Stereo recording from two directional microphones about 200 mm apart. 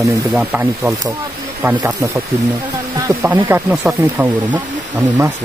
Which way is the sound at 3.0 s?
15° right (ahead or behind).